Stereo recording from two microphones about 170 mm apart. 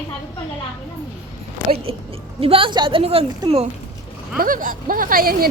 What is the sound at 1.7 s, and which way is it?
A woman's voice, 35° right (ahead or behind).